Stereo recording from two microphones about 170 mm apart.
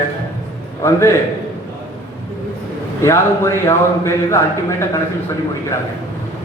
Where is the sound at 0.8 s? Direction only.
15° left (ahead or behind).